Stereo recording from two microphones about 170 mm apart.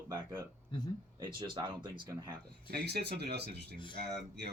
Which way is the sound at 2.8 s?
75° right (ahead or behind).